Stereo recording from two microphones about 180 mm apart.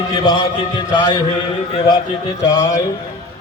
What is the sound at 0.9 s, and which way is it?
Speech, 25° left (ahead or behind).